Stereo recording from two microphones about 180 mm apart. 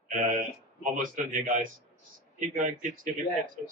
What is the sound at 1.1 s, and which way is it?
Speech, 45° right (ahead or behind).